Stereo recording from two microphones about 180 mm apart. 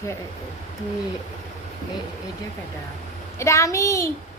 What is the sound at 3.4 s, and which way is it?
Speech, 15° left (ahead or behind).